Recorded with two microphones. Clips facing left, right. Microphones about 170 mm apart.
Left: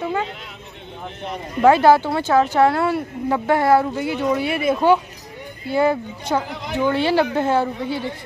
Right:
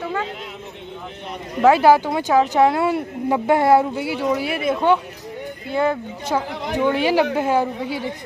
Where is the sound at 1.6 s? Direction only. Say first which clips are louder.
Even; 5° right (ahead or behind); by 3.9 s 20° right (ahead or behind).